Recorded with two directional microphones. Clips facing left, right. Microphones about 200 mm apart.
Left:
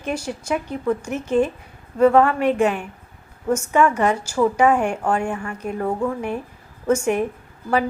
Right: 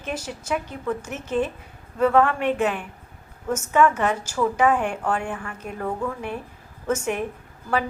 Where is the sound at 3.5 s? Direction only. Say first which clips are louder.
Left 2 dB; 10° left (ahead or behind).